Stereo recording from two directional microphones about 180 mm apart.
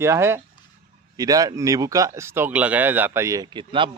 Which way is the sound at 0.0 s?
15° right (ahead or behind).